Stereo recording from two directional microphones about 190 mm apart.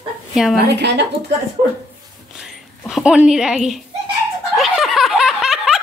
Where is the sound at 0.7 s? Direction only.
65° right (ahead or behind).